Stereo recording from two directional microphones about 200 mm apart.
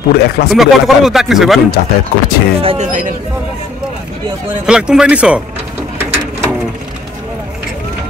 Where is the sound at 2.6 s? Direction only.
35° right (ahead or behind).